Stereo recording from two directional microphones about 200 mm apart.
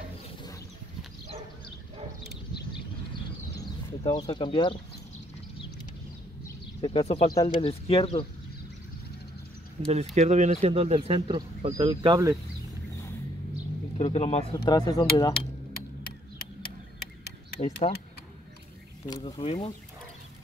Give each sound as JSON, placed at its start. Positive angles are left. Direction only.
{"t": 4.2, "sound": "speech", "side_deg": 25}
{"t": 6.8, "sound": "speech", "side_deg": 30}
{"t": 9.8, "sound": "speech", "side_deg": -30}
{"t": 13.9, "sound": "speech", "side_deg": 30}
{"t": 16.0, "sound": "a sound", "side_deg": 50}
{"t": 17.6, "sound": "speech", "side_deg": 30}
{"t": 19.0, "sound": "speech", "side_deg": 20}